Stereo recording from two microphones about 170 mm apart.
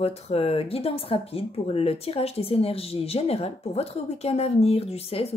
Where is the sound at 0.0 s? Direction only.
35° left (ahead or behind).